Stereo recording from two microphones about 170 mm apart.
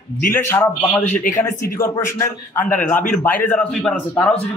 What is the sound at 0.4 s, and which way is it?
A man's voice, 15° left (ahead or behind).